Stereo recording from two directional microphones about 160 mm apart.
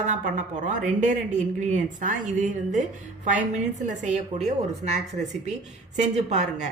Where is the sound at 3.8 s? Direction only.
45° right (ahead or behind).